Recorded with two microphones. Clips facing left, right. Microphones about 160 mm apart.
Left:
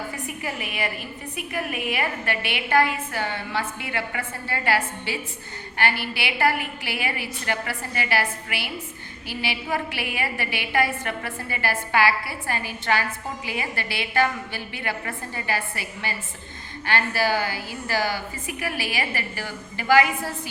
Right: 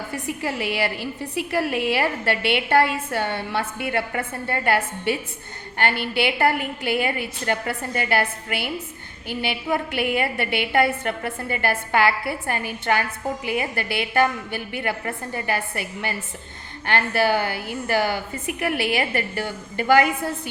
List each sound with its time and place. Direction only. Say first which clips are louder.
0.6 s a woman's voice: right 5 dB; 80° right; by 20.1 s 55° right (ahead or behind)